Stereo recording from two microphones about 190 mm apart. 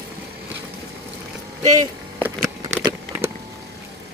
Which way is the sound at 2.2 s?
15° right (ahead or behind).